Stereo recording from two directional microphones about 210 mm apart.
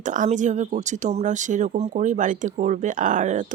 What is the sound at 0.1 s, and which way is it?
Speech, 35° right (ahead or behind).